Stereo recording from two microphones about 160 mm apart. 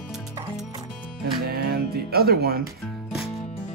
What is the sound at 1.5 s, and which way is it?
Music, 75° right (ahead or behind).